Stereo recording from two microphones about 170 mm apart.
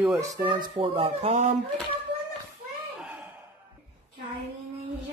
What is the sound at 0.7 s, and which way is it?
Speech, 35° right (ahead or behind).